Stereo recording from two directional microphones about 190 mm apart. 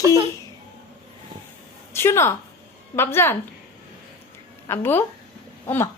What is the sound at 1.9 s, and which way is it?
A woman's voice, 15° left (ahead or behind).